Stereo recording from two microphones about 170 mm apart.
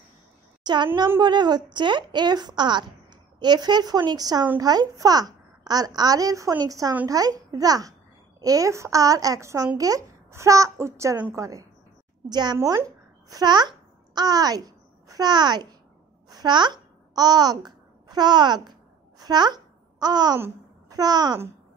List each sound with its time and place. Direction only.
0.9 s a child's voice: 25° right (ahead or behind)
16.3 s babbling: 25° right (ahead or behind)
20.3 s a child's voice: 15° right (ahead or behind)